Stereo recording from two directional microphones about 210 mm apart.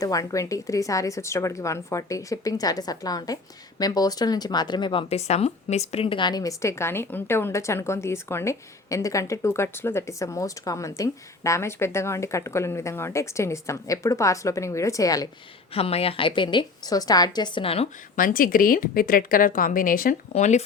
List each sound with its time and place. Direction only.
0.0 s speech: 15° left (ahead or behind)
15.7 s a woman's voice: 30° left (ahead or behind)
18.2 s speech: 40° left (ahead or behind)